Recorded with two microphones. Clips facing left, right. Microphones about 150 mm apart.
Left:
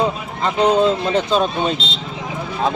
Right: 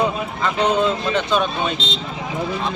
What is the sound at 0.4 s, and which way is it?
Speech, 35° left (ahead or behind).